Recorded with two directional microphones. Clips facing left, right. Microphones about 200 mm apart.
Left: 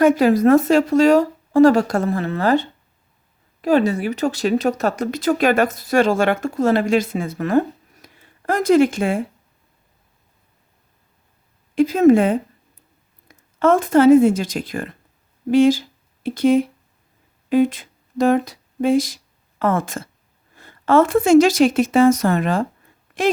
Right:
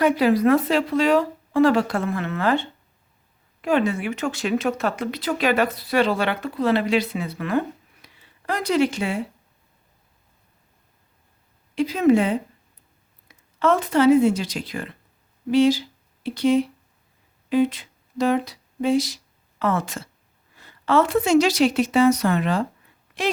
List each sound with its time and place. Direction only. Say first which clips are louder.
0.0 s speech: left 4 dB; 45° left (ahead or behind)
11.7 s speech: left 5 dB; 50° left (ahead or behind)
13.6 s speech: left 5 dB; 50° left (ahead or behind)